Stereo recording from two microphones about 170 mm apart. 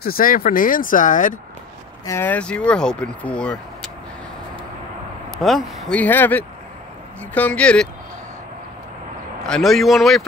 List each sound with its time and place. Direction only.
0.0 s speech: 60° left (ahead or behind)
2.0 s speech: 10° left (ahead or behind)
5.3 s speech: centre (ahead or behind)
9.4 s speech: centre (ahead or behind)